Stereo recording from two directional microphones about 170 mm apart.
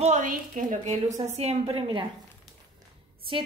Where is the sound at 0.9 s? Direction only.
40° right (ahead or behind).